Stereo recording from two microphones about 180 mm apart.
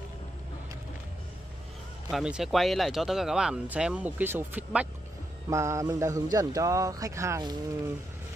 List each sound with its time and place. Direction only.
2.0 s speech: 5° right (ahead or behind)
5.5 s mantra: 15° right (ahead or behind)
6.3 s speech: 20° right (ahead or behind)